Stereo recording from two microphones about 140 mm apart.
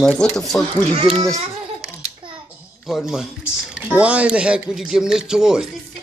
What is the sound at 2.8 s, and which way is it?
Speech, centre (ahead or behind).